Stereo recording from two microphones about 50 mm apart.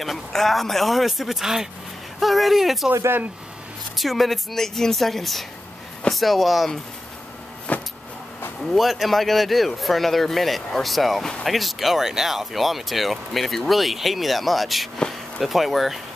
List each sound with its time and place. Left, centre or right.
0.0 s speech: centre
3.9 s speech: centre
7.7 s vehicle: left
8.7 s speech: centre
15.0 s a sound: centre
15.4 s speech: centre